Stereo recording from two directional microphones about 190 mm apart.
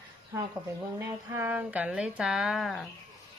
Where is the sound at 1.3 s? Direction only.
10° right (ahead or behind).